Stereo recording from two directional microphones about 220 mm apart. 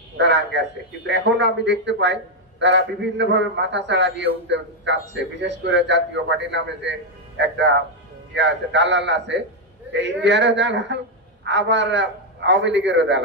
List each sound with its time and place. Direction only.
0.2 s a man's voice: 55° right (ahead or behind)